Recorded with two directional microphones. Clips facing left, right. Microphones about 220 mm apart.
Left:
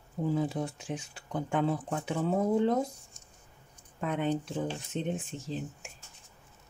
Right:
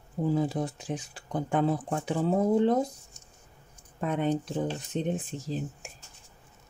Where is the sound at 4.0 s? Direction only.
40° right (ahead or behind).